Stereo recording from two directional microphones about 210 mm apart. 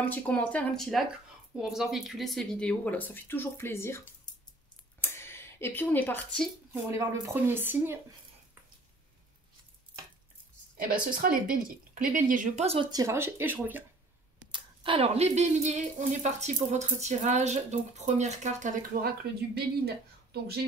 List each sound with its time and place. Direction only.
0.1 s speech: 5° left (ahead or behind)
6.7 s speech: 15° right (ahead or behind)
10.9 s speech: 40° right (ahead or behind)
12.9 s speech: 15° right (ahead or behind)
14.5 s speech: 25° right (ahead or behind)
19.2 s speech: 50° right (ahead or behind)